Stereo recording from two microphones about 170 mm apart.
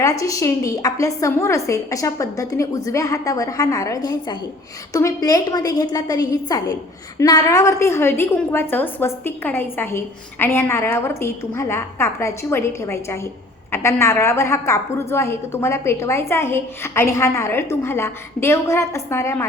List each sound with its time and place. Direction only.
0.0 s a woman's voice: 20° left (ahead or behind)